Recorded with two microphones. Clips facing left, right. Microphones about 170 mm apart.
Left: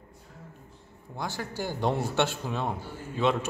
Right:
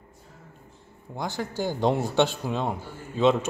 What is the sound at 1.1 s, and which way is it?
A man's voice, 20° right (ahead or behind).